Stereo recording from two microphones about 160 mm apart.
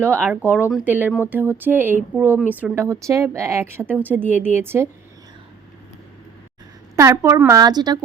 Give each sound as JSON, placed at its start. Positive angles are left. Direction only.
{"t": 0.0, "sound": "speech", "side_deg": -15}
{"t": 4.3, "sound": "speech", "side_deg": 45}
{"t": 4.5, "sound": "speech", "side_deg": -15}
{"t": 6.9, "sound": "speech", "side_deg": -20}